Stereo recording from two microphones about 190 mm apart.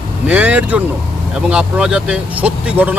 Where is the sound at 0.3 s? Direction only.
5° right (ahead or behind).